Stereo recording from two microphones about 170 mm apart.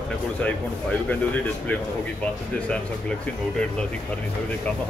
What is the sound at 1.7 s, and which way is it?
Speech, 10° left (ahead or behind).